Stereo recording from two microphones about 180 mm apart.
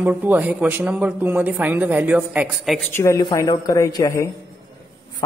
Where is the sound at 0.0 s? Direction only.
10° right (ahead or behind).